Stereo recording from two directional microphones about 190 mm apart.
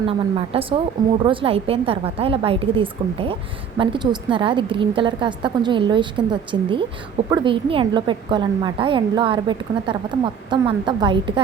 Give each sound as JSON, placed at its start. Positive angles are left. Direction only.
{"t": 0.0, "sound": "a woman's voice", "side_deg": -30}